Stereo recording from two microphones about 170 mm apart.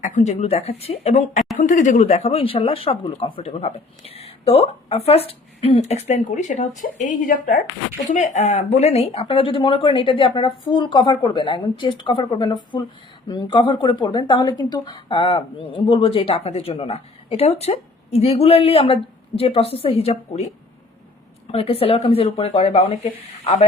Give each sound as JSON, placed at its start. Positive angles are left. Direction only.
{"t": 0.0, "sound": "a woman's voice", "side_deg": 50}
{"t": 21.5, "sound": "a woman's voice", "side_deg": 35}